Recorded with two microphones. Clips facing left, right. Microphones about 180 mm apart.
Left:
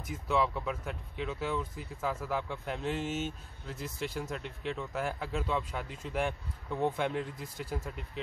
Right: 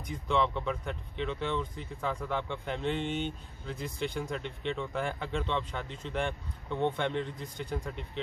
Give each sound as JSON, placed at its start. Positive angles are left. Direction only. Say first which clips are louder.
{"t": 0.0, "sound": "speech", "louder": "right 1 dB", "side_deg": 5}